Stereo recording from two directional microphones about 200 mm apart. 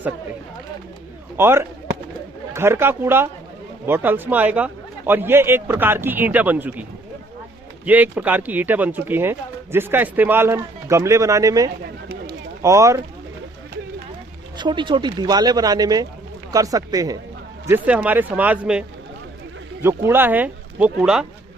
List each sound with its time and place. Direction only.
1.4 s speech: 10° right (ahead or behind)
7.9 s speech: 10° right (ahead or behind)
12.0 s run: 50° right (ahead or behind)
12.6 s speech: 15° right (ahead or behind)
14.6 s speech: 25° right (ahead or behind)
17.7 s speech: 5° right (ahead or behind)
20.1 s speech: 10° right (ahead or behind)